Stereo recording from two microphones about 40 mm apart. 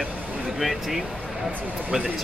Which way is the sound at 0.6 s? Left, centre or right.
Centre.